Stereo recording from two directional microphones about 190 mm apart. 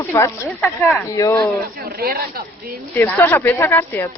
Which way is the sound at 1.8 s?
50° right (ahead or behind).